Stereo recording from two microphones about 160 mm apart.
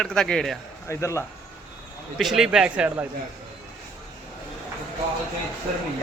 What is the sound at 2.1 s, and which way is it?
Speech, centre (ahead or behind).